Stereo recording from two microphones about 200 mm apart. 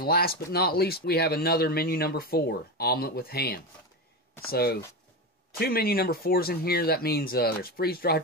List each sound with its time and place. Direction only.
0.0 s speech: 50° left (ahead or behind)